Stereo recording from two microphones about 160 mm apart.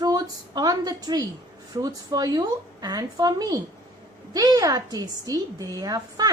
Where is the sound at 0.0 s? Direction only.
25° right (ahead or behind).